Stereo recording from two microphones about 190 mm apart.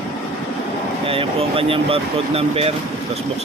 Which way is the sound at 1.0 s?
30° right (ahead or behind).